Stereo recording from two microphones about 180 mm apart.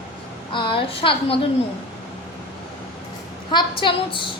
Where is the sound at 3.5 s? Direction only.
25° left (ahead or behind).